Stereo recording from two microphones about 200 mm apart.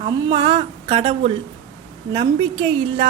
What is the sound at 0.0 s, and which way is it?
A woman's voice, 25° right (ahead or behind).